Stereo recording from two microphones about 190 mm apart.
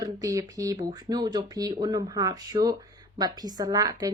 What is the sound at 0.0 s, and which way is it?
A woman's voice, 15° right (ahead or behind).